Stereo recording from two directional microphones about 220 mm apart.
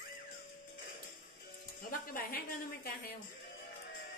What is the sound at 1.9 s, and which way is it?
A woman's voice, 40° left (ahead or behind).